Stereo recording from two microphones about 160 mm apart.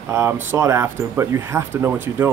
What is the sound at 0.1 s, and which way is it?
Speech, 15° right (ahead or behind).